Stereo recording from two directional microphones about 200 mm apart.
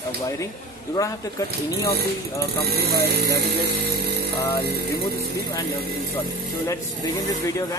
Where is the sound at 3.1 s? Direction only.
55° right (ahead or behind).